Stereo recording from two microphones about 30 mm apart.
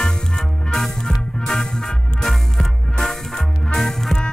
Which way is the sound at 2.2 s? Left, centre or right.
Centre.